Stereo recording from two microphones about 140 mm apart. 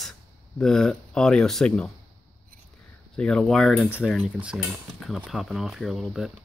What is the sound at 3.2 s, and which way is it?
Speech, 5° left (ahead or behind).